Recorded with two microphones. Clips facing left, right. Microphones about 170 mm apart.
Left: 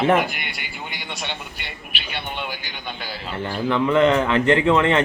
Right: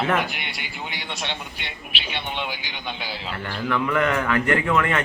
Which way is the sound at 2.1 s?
5° left (ahead or behind).